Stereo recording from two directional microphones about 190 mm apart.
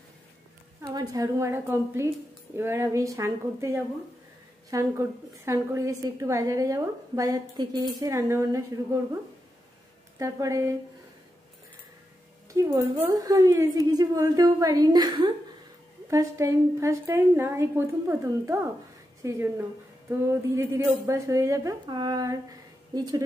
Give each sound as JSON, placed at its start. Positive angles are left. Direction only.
{"t": 0.9, "sound": "a woman's voice", "side_deg": -15}
{"t": 10.1, "sound": "a woman's voice", "side_deg": -15}
{"t": 12.5, "sound": "a woman's voice", "side_deg": -10}